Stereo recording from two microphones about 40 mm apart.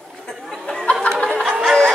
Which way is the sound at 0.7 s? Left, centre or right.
Centre.